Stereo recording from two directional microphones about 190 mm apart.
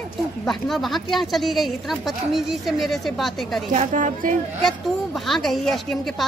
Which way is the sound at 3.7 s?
40° right (ahead or behind).